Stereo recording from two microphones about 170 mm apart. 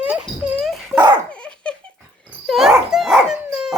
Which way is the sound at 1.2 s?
5° left (ahead or behind).